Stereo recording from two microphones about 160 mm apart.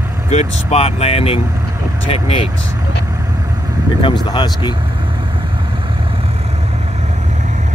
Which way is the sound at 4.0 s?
30° left (ahead or behind).